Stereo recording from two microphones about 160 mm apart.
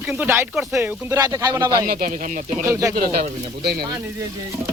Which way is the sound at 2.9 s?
70° right (ahead or behind).